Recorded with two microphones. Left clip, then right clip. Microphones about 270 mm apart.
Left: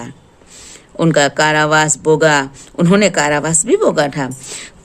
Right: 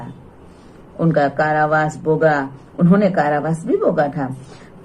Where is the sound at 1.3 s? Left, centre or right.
Left.